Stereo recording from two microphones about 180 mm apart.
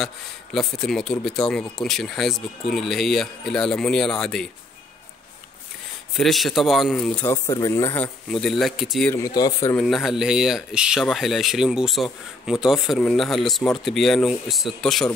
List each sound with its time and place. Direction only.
0.0 s speech: 5° left (ahead or behind)
6.1 s speech: centre (ahead or behind)
7.2 s speech: 20° left (ahead or behind); by 9.1 s centre (ahead or behind)
9.1 s speech: 20° left (ahead or behind)
9.8 s speech: centre (ahead or behind)